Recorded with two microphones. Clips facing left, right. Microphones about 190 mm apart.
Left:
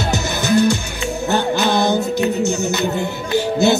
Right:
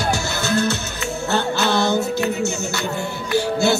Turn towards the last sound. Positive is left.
turn(degrees=20)  # may be behind; listen again after turning